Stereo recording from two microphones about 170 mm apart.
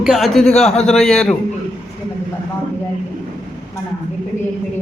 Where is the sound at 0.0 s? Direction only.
Centre (ahead or behind).